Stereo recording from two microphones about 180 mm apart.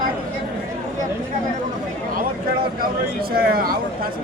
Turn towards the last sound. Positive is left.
turn(degrees=-55)  # may be behind; listen again after turning